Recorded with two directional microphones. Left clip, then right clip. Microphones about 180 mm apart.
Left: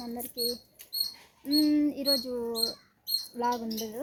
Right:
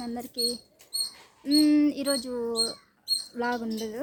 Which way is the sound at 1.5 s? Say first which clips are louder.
Right 4 dB; 25° right (ahead or behind).